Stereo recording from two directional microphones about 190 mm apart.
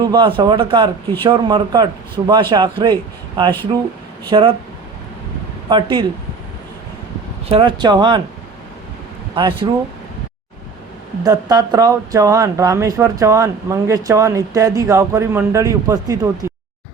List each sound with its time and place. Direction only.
0.1 s a man's voice: 25° right (ahead or behind)
5.6 s a man's voice: 25° right (ahead or behind)
7.5 s a man's voice: 25° right (ahead or behind)
9.3 s a man's voice: 25° right (ahead or behind)
11.2 s speech: 20° right (ahead or behind)